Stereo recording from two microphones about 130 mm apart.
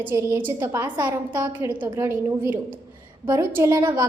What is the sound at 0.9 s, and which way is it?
Speech, 35° right (ahead or behind).